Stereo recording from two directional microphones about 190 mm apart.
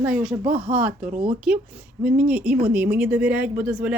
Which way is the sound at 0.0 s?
5° right (ahead or behind).